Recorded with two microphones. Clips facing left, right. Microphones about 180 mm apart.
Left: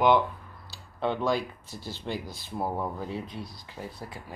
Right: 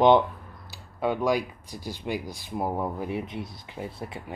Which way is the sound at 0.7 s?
10° right (ahead or behind).